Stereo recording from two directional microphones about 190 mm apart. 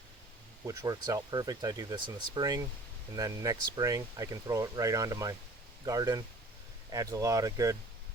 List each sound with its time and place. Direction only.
0.6 s speech: 15° right (ahead or behind)